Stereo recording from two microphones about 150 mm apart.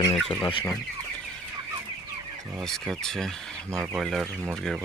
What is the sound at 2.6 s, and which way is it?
Speech, 5° left (ahead or behind).